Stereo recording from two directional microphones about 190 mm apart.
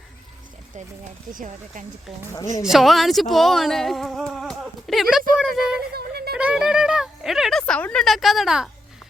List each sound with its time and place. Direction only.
1.3 s speech: 45° right (ahead or behind)
2.6 s speech: centre (ahead or behind)